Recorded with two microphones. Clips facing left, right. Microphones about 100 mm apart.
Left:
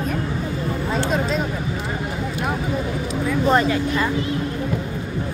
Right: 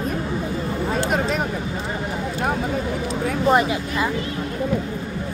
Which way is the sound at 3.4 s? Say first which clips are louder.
Even; 15° right (ahead or behind).